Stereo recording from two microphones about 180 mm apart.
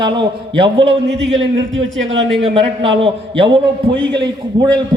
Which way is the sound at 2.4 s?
30° right (ahead or behind).